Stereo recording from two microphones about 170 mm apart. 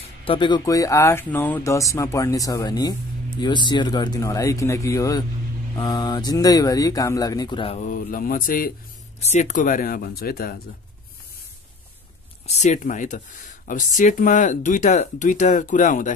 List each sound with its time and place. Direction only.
0.2 s speech: 30° left (ahead or behind)
7.8 s speech: 55° left (ahead or behind)
9.2 s speech: 45° left (ahead or behind); by 10.6 s 60° left (ahead or behind)
12.4 s speech: 45° left (ahead or behind)